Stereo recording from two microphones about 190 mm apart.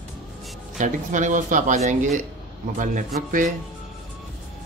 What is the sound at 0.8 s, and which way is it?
Speech, 40° right (ahead or behind).